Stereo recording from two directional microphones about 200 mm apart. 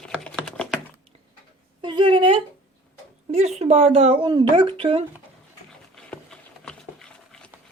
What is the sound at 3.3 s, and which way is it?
Speech, 35° right (ahead or behind).